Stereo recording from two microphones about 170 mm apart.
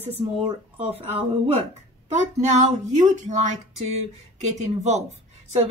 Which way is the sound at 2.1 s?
45° right (ahead or behind).